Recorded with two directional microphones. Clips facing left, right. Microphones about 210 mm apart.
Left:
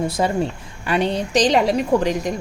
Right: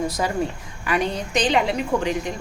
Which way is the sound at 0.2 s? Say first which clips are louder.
Left 3 dB; 25° left (ahead or behind).